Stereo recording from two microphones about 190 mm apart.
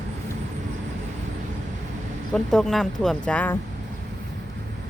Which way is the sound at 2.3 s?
5° left (ahead or behind).